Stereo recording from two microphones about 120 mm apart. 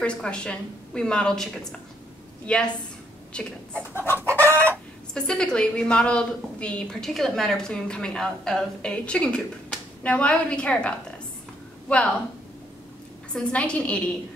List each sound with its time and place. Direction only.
0.0 s a woman's voice: 10° left (ahead or behind)
3.9 s chicken: 20° left (ahead or behind)
4.2 s chicken: 20° right (ahead or behind)
5.1 s a woman's voice: 5° left (ahead or behind)
13.3 s a woman's voice: 10° left (ahead or behind)